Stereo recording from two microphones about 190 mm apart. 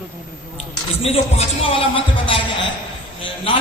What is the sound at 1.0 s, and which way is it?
A man's voice, 30° left (ahead or behind).